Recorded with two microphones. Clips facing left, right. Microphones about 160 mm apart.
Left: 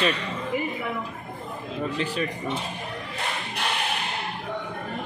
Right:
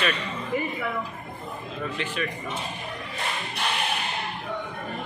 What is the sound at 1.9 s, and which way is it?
Speech, 35° left (ahead or behind).